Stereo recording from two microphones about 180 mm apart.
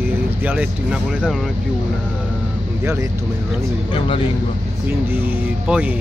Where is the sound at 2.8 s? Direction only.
15° right (ahead or behind).